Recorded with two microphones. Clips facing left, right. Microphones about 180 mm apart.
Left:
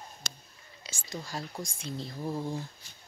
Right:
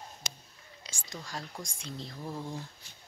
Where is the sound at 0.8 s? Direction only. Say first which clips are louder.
Left 4 dB; 5° left (ahead or behind).